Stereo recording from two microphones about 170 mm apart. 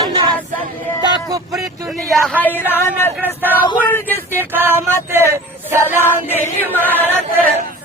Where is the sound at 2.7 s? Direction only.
15° left (ahead or behind).